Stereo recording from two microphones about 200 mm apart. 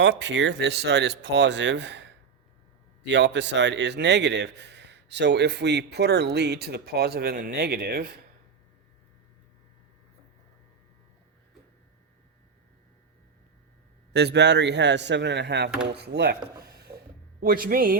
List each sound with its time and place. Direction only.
0.0 s speech: 65° right (ahead or behind)
14.1 s speech: 55° right (ahead or behind)
16.6 s a sound: 55° right (ahead or behind)
17.4 s speech: 45° right (ahead or behind)